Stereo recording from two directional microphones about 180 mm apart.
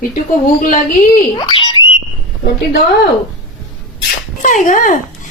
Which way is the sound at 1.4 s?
25° left (ahead or behind).